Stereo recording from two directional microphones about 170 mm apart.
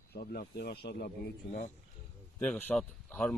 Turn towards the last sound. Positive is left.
turn(degrees=5)  # may be behind; listen again after turning